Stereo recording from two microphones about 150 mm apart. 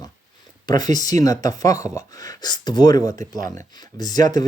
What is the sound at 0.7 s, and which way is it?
Speech, 25° left (ahead or behind).